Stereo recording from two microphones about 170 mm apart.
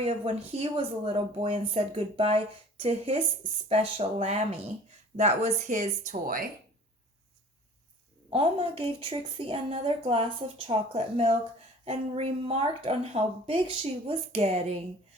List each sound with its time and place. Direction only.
0.0 s speech: 35° right (ahead or behind); by 6.4 s 55° right (ahead or behind)
8.3 s speech: 35° right (ahead or behind)